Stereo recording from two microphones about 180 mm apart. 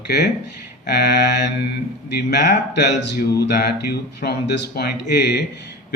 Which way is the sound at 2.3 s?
70° left (ahead or behind).